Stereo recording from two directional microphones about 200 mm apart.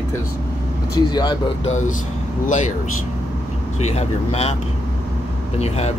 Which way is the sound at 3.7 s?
35° left (ahead or behind).